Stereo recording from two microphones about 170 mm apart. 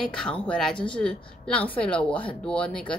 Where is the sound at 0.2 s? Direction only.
5° left (ahead or behind).